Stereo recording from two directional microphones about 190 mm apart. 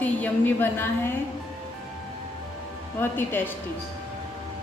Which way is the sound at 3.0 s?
10° left (ahead or behind).